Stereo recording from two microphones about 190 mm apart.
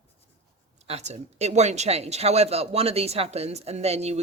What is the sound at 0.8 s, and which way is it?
Speech, 35° right (ahead or behind).